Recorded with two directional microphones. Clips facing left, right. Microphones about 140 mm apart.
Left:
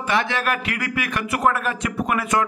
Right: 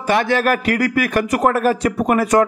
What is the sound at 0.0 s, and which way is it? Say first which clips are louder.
A man's voice: right 6 dB; 45° right (ahead or behind).